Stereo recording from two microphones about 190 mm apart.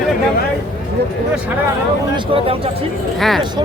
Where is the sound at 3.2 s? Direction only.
Centre (ahead or behind).